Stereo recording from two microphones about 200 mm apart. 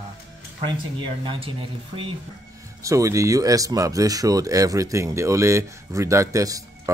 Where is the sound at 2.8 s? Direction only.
15° right (ahead or behind).